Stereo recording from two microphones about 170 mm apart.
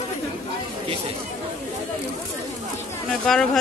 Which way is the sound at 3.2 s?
5° left (ahead or behind).